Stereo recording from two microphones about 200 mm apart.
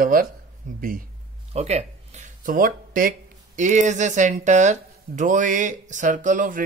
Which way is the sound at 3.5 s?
40° right (ahead or behind).